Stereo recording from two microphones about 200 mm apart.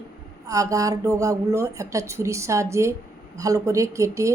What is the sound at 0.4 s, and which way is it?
Speech, 15° right (ahead or behind).